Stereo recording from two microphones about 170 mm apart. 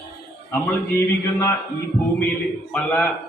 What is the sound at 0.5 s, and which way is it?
A man's voice, 15° left (ahead or behind).